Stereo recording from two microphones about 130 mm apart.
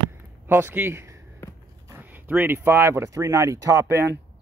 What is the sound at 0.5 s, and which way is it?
Speech, 15° right (ahead or behind).